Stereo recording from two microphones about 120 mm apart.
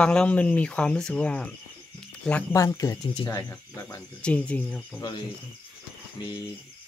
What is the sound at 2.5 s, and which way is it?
Speech, 30° left (ahead or behind).